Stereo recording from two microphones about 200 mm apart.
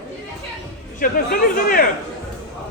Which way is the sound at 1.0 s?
45° left (ahead or behind).